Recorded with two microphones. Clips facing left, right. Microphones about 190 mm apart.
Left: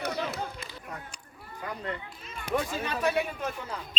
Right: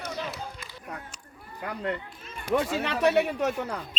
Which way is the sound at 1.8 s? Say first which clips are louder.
Right 5 dB; 65° right (ahead or behind).